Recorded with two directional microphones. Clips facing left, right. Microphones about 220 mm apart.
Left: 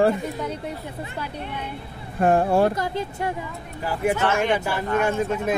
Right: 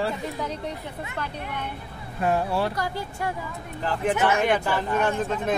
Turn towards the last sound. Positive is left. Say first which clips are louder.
# left 2 dB
turn(degrees=10)  # may be behind; listen again after turning